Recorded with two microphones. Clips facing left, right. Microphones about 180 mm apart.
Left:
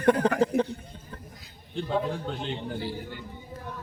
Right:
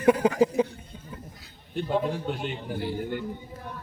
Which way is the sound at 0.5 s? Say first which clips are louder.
Even; 60° left (ahead or behind).